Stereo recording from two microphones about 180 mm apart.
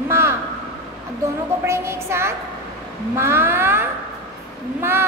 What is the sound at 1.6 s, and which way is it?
A woman's voice, 15° right (ahead or behind).